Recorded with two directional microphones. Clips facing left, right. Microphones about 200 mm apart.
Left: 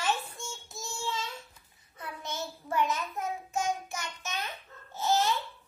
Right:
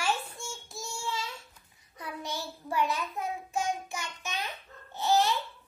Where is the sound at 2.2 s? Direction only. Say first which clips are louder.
Even; 15° right (ahead or behind).